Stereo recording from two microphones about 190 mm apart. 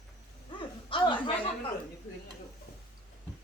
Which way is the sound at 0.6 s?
25° left (ahead or behind).